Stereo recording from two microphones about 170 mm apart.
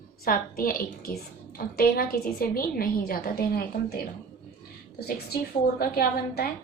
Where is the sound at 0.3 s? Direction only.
55° left (ahead or behind).